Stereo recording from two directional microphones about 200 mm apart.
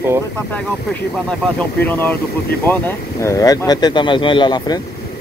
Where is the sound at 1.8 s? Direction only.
10° left (ahead or behind).